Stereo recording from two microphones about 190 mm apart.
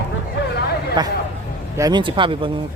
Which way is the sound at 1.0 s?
20° right (ahead or behind).